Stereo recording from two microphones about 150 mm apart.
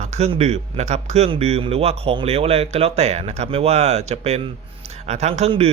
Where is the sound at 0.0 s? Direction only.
45° right (ahead or behind).